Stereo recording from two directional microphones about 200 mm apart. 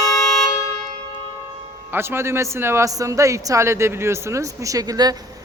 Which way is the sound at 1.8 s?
10° right (ahead or behind).